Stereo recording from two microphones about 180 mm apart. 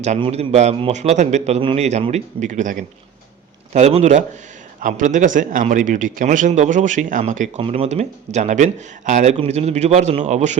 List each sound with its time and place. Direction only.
0.2 s a man's voice: 35° right (ahead or behind)